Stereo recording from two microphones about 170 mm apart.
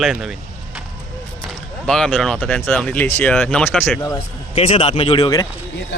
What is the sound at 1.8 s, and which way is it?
Speech, 5° left (ahead or behind).